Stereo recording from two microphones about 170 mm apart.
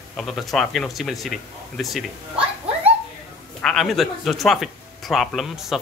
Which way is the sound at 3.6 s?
Centre (ahead or behind).